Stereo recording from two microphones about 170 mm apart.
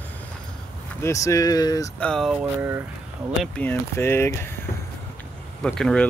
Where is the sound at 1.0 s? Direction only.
15° left (ahead or behind).